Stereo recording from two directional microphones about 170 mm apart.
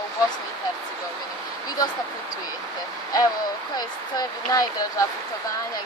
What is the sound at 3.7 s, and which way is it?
Speech, 20° left (ahead or behind).